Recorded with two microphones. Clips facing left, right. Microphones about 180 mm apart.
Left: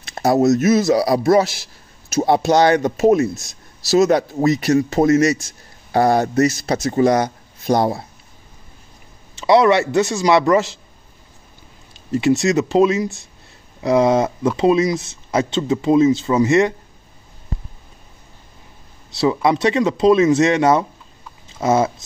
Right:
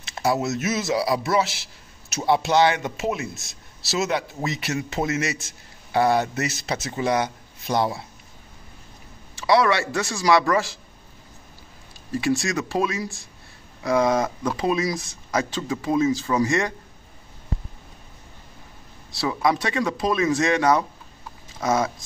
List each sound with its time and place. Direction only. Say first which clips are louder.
0.0 s speech: left 8 dB; 40° left (ahead or behind)
9.4 s speech: left 6 dB; 25° left (ahead or behind)
11.9 s speech: left 6 dB; 20° left (ahead or behind)
19.1 s speech: left 6 dB; 25° left (ahead or behind)